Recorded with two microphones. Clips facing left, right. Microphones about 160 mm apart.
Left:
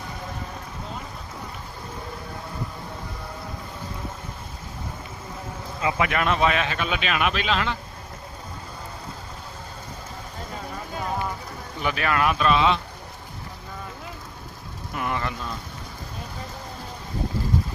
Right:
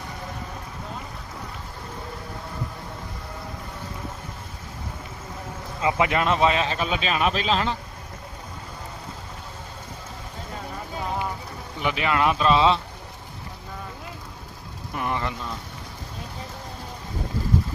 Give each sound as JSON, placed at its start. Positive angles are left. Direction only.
{"t": 5.8, "sound": "speech", "side_deg": -25}
{"t": 11.8, "sound": "speech", "side_deg": -20}
{"t": 14.9, "sound": "speech", "side_deg": -25}